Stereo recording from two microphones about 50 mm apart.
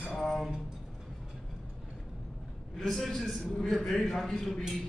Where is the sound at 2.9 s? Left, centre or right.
Centre.